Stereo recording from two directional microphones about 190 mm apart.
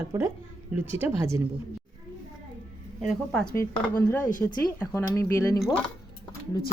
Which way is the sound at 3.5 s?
15° left (ahead or behind).